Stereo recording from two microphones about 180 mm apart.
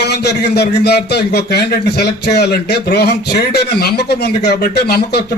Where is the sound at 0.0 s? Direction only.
65° left (ahead or behind).